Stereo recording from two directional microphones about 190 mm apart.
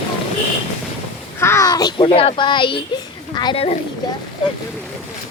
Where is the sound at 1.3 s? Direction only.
15° left (ahead or behind).